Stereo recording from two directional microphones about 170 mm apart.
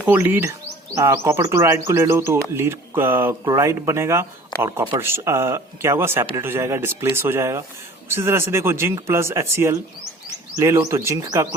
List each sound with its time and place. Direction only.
0.0 s speech: 10° right (ahead or behind)